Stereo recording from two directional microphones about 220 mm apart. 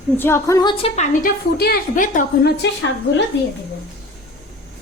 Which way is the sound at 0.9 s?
35° left (ahead or behind).